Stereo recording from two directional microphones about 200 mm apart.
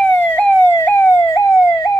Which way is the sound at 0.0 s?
10° left (ahead or behind).